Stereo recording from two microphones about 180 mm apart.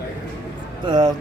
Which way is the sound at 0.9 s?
25° right (ahead or behind).